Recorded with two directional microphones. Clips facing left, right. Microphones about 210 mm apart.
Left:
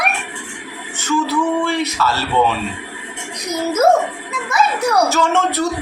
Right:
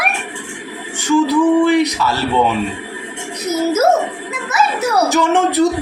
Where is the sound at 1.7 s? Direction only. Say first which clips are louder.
Right 5 dB; 15° right (ahead or behind).